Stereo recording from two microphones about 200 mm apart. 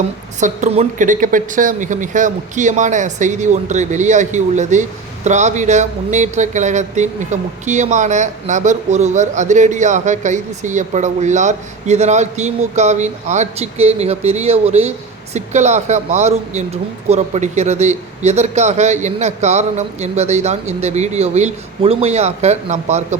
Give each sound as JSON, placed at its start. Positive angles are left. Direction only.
{"t": 0.3, "sound": "speech", "side_deg": -35}